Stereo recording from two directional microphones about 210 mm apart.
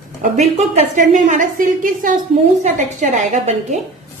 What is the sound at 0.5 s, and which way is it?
A woman's voice, 35° right (ahead or behind).